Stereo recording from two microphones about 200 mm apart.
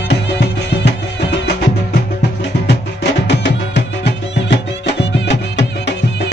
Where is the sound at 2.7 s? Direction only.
60° left (ahead or behind).